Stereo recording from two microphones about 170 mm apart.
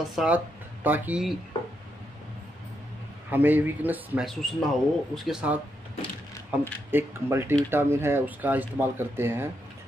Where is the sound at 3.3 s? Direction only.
10° right (ahead or behind).